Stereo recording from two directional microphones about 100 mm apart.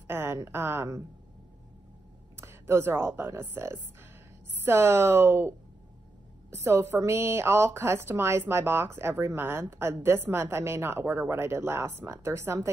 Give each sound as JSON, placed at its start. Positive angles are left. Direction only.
{"t": 0.0, "sound": "a sound", "side_deg": -25}
{"t": 0.5, "sound": "a woman's voice", "side_deg": -25}
{"t": 2.3, "sound": "a woman's voice", "side_deg": -25}
{"t": 6.5, "sound": "a woman's voice", "side_deg": -25}